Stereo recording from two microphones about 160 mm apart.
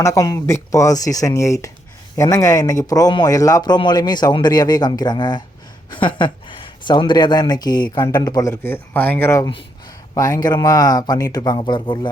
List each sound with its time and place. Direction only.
0.0 s a man's voice: 20° left (ahead or behind)